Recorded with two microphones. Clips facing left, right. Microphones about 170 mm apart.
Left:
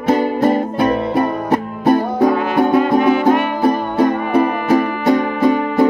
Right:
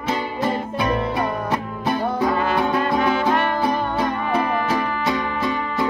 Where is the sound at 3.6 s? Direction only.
50° left (ahead or behind).